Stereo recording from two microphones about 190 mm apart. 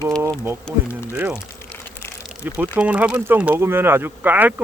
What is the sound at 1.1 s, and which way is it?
Speech, 10° right (ahead or behind).